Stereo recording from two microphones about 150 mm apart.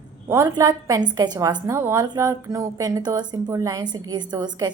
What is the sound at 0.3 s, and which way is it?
A woman's voice, 20° right (ahead or behind).